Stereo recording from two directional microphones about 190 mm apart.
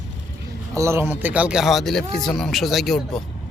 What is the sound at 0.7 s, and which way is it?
Speech, 15° right (ahead or behind).